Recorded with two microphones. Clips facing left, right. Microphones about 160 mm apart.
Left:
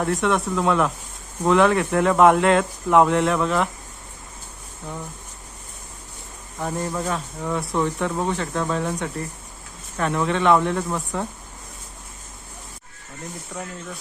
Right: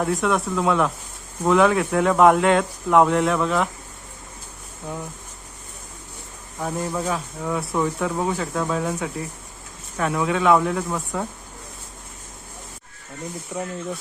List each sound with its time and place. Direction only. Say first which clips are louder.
0.0 s speech: even; centre (ahead or behind)
6.6 s speech: even; 5° right (ahead or behind)
13.5 s speech: right 5 dB; 20° right (ahead or behind)